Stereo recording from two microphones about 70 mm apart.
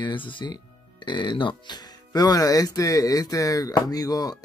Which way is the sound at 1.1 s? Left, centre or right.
Left.